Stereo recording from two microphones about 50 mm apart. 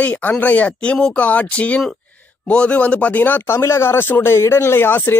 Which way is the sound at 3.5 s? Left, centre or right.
Left.